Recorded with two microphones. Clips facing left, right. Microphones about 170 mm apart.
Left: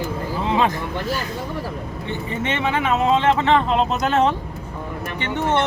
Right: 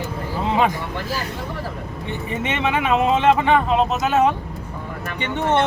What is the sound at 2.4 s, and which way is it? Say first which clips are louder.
Speech: even; 15° right (ahead or behind).